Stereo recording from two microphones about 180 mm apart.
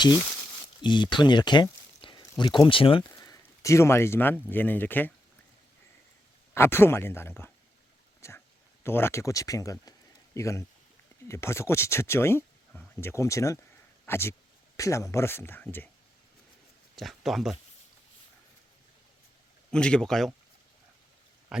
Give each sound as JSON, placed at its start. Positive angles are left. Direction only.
{"t": 0.8, "sound": "speech", "side_deg": 25}
{"t": 3.1, "sound": "a sound", "side_deg": 15}
{"t": 4.4, "sound": "speech", "side_deg": 10}
{"t": 6.5, "sound": "speech", "side_deg": 15}
{"t": 8.2, "sound": "a sound", "side_deg": 15}
{"t": 8.8, "sound": "speech", "side_deg": 15}
{"t": 16.9, "sound": "speech", "side_deg": 0}
{"t": 19.7, "sound": "speech", "side_deg": 5}
{"t": 21.5, "sound": "a sound", "side_deg": -5}